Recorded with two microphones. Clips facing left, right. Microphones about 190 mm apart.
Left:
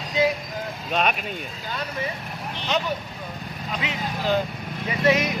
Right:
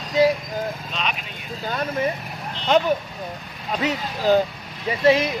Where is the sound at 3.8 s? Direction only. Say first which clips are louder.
Right 6 dB; 40° right (ahead or behind).